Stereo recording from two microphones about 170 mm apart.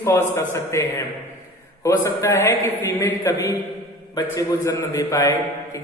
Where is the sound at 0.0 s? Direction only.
15° left (ahead or behind).